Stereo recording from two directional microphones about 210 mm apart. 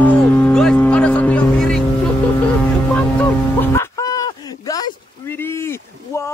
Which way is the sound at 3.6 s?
15° left (ahead or behind).